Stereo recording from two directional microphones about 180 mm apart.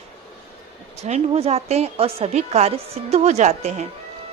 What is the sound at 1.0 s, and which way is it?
A woman's voice, 35° right (ahead or behind).